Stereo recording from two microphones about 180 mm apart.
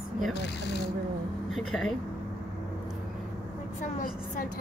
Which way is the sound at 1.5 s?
Centre (ahead or behind).